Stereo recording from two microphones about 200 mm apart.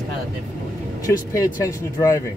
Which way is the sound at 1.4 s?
15° left (ahead or behind).